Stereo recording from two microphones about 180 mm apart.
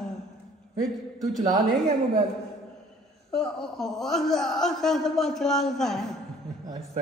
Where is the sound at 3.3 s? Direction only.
5° left (ahead or behind).